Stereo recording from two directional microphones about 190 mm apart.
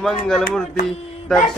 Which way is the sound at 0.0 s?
Centre (ahead or behind).